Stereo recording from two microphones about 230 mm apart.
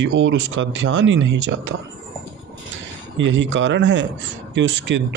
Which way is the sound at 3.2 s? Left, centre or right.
Right.